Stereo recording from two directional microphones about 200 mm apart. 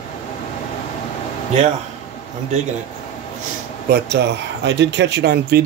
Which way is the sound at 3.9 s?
55° right (ahead or behind).